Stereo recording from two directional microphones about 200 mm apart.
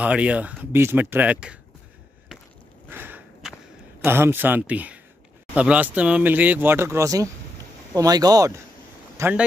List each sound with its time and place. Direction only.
0.0 s speech: 5° right (ahead or behind)
2.9 s walk: 10° right (ahead or behind)
4.0 s speech: 10° right (ahead or behind)
9.1 s a sound: 10° right (ahead or behind)